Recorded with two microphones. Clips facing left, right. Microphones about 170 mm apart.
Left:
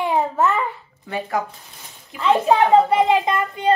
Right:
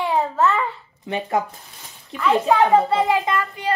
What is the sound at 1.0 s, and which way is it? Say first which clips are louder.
Speech: right 2 dB; 20° right (ahead or behind).